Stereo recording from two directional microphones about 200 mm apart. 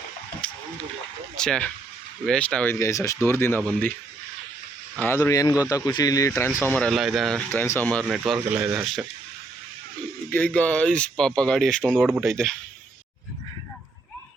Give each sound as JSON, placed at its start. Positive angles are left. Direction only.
{"t": 1.4, "sound": "speech", "side_deg": 5}
{"t": 4.9, "sound": "speech", "side_deg": 10}
{"t": 8.3, "sound": "speech", "side_deg": -5}
{"t": 10.2, "sound": "speech", "side_deg": 10}